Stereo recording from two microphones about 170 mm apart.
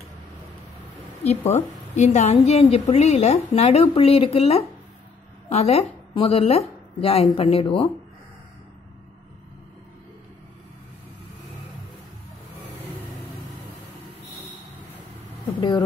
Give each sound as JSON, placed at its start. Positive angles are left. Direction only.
{"t": 1.2, "sound": "a woman's voice", "side_deg": 40}